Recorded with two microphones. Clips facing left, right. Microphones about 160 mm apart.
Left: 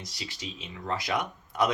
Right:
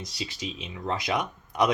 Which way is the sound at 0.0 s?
20° right (ahead or behind).